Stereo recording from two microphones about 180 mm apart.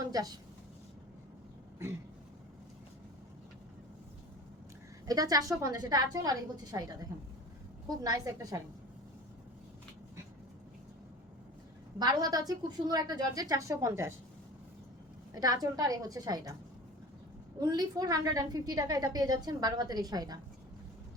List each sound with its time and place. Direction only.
0.0 s a sound: 20° right (ahead or behind)
5.0 s a woman's voice: 20° right (ahead or behind)
11.9 s a woman's voice: 20° right (ahead or behind)
15.4 s a woman's voice: 20° right (ahead or behind)
17.6 s a woman's voice: 20° right (ahead or behind)